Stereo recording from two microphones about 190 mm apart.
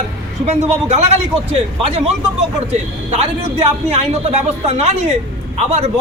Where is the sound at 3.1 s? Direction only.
30° right (ahead or behind).